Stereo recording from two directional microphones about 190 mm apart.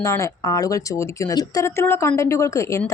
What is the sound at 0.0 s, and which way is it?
Speech, 15° left (ahead or behind).